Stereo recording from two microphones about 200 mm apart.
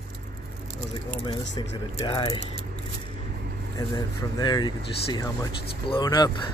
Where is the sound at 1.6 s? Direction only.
25° left (ahead or behind).